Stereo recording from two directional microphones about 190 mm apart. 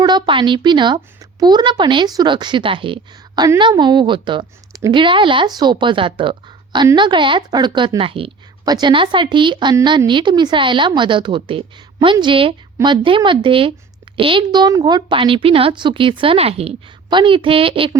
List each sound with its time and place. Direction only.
0.0 s a woman's voice: 20° right (ahead or behind)